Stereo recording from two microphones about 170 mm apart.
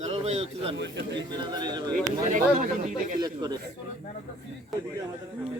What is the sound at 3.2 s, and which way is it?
Speech, 25° right (ahead or behind).